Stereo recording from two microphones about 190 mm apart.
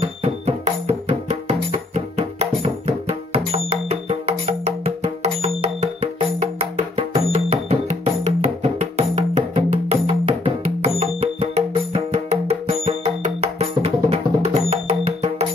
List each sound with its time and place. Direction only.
0.0 s music: 30° right (ahead or behind)